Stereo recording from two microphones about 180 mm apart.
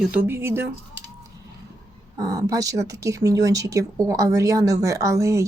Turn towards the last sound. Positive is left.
turn(degrees=-15)  # may be behind; listen again after turning